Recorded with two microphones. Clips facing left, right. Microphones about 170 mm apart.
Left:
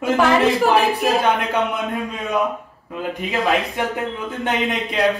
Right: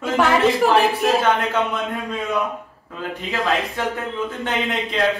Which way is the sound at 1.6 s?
15° left (ahead or behind).